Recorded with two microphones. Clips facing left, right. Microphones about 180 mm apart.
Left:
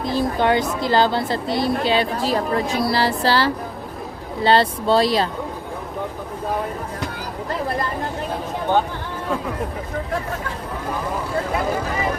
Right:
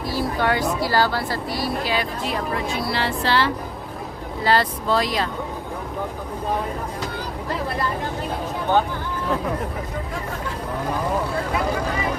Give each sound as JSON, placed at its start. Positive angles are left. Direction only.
{"t": 0.0, "sound": "speech", "side_deg": 20}